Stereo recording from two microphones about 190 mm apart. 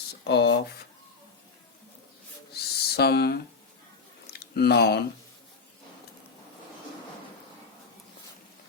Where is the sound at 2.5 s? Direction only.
55° left (ahead or behind).